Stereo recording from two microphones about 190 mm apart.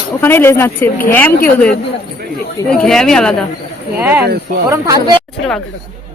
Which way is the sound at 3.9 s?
10° right (ahead or behind).